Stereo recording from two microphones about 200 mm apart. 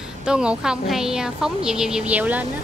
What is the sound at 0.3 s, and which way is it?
A woman's voice, 5° right (ahead or behind).